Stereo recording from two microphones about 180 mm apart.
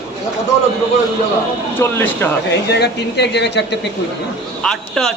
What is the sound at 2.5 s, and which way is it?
Speech, 70° left (ahead or behind).